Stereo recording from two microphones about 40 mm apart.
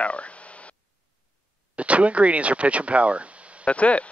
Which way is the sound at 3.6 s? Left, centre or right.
Left.